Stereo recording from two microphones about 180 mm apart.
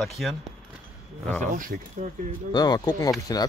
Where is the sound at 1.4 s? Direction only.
50° right (ahead or behind).